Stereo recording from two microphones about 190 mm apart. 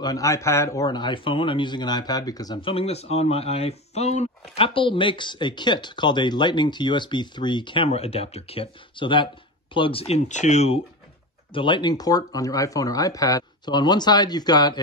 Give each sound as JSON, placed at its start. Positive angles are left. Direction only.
{"t": 0.0, "sound": "a man's voice", "side_deg": 20}
{"t": 11.5, "sound": "a man's voice", "side_deg": 25}